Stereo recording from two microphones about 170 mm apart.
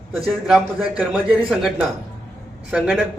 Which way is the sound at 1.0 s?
5° right (ahead or behind).